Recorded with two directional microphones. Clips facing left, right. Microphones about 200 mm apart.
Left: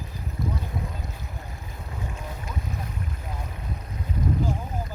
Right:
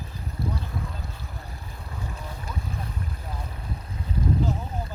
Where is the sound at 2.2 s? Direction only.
35° right (ahead or behind).